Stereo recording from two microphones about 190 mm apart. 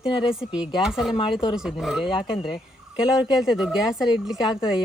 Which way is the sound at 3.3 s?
Centre (ahead or behind).